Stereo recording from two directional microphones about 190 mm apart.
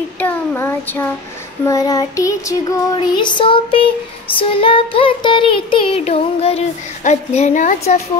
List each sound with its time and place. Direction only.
0.2 s child singing: 10° left (ahead or behind)
1.7 s music: 20° left (ahead or behind)
7.1 s a woman's voice: 40° left (ahead or behind)